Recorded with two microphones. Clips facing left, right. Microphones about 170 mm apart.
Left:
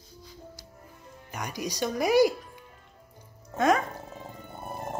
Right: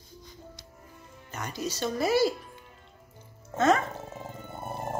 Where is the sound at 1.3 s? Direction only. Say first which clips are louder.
Even; 15° left (ahead or behind).